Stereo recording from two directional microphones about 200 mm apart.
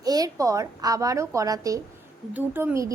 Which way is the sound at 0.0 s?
20° right (ahead or behind).